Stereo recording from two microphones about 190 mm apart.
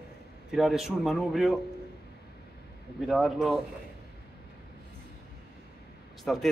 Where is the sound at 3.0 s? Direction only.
Centre (ahead or behind).